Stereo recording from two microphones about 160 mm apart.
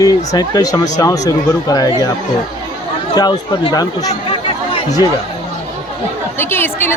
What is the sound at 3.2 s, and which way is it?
Speech, 30° left (ahead or behind).